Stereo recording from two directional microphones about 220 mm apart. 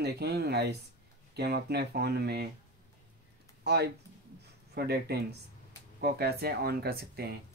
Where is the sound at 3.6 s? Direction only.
50° right (ahead or behind).